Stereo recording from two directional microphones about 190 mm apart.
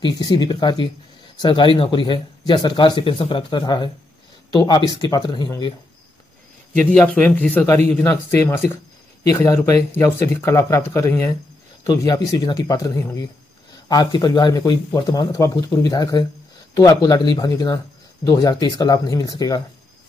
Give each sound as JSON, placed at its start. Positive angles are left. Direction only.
{"t": 0.0, "sound": "speech", "side_deg": 20}
{"t": 6.9, "sound": "speech", "side_deg": 5}